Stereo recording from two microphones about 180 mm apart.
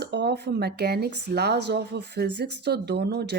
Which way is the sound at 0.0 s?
70° right (ahead or behind).